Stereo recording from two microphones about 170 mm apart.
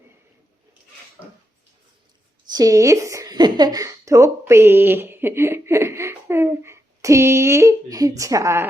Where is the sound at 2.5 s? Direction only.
20° right (ahead or behind).